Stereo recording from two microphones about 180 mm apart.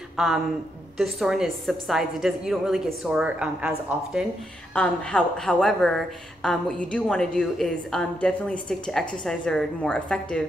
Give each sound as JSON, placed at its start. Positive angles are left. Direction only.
{"t": 0.2, "sound": "speech", "side_deg": 0}
{"t": 4.7, "sound": "speech", "side_deg": 5}